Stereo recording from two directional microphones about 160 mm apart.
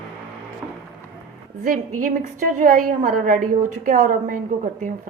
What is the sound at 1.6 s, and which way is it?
A woman's voice, 55° right (ahead or behind).